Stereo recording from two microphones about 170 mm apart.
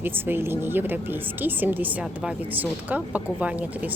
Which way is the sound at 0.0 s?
10° right (ahead or behind).